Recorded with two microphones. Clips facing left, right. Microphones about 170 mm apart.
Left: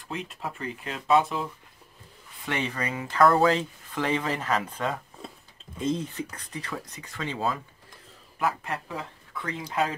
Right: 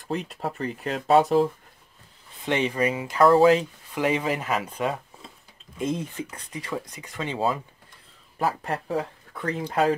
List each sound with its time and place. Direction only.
0.1 s speech: 40° right (ahead or behind)
2.4 s speech: 20° right (ahead or behind)
6.6 s speech: 15° right (ahead or behind)
8.4 s speech: 35° right (ahead or behind)